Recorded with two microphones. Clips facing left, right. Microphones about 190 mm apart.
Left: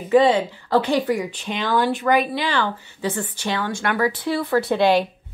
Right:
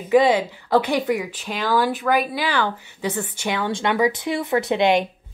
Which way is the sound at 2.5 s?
15° right (ahead or behind).